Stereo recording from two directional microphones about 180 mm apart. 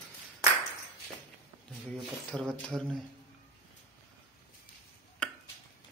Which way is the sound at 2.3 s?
5° left (ahead or behind).